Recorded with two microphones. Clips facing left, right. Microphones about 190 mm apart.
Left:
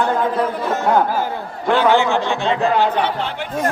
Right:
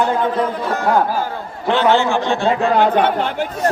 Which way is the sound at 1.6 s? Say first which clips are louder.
Even; 10° left (ahead or behind).